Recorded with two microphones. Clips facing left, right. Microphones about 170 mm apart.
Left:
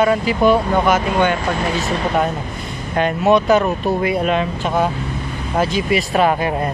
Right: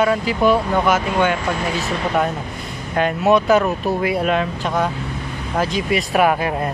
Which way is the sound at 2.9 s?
Centre (ahead or behind).